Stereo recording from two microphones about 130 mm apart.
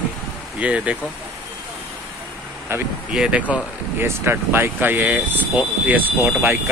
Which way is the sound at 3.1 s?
5° right (ahead or behind).